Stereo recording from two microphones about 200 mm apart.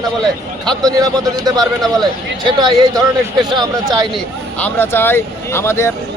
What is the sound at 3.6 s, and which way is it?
Speech, 20° right (ahead or behind).